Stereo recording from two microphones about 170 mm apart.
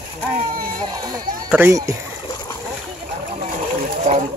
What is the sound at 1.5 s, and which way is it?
Speech, 15° right (ahead or behind).